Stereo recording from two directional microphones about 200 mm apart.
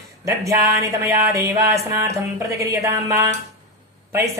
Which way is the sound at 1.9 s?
15° right (ahead or behind).